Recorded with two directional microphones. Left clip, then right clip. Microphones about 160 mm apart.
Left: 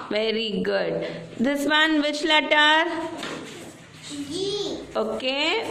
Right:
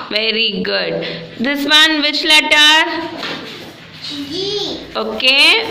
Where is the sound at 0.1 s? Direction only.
30° left (ahead or behind).